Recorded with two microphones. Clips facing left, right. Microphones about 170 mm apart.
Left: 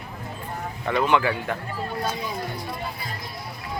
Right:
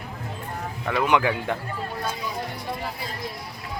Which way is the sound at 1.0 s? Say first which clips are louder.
Right 1 dB; 15° right (ahead or behind).